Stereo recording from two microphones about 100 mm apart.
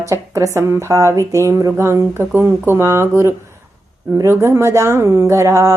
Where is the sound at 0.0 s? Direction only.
30° right (ahead or behind).